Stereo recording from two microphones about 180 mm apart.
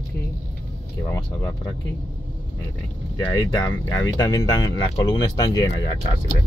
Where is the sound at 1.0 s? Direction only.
15° left (ahead or behind).